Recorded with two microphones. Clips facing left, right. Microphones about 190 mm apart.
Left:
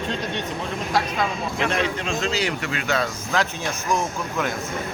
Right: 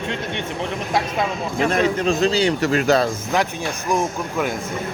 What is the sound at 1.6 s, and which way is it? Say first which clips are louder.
A man's voice: right 7 dB; 45° right (ahead or behind).